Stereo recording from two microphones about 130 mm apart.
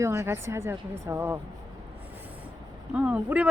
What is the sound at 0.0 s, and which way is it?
Speech, 20° right (ahead or behind).